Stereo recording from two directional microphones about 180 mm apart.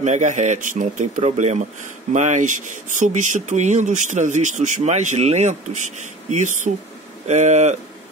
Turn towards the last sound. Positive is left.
turn(degrees=-40)  # may be behind; listen again after turning